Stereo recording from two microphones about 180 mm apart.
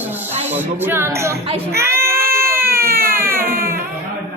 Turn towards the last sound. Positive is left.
turn(degrees=-15)  # may be behind; listen again after turning